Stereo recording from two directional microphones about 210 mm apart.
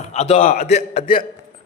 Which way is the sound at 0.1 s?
30° left (ahead or behind).